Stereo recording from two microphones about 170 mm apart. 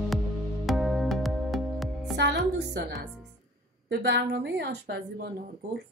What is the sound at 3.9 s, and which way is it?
A woman's voice, 85° right.